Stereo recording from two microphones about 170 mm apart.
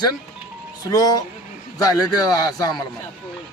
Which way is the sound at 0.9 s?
25° left (ahead or behind).